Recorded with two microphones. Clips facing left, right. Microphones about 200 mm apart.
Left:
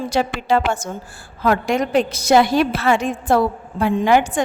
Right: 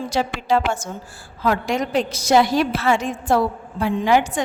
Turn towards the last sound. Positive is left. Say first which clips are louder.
# left 2 dB
turn(degrees=55)  # may be behind; listen again after turning